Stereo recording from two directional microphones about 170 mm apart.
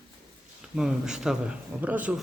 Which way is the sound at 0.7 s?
5° right (ahead or behind).